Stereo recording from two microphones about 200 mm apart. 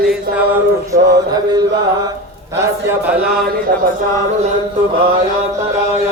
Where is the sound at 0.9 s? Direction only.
50° right (ahead or behind).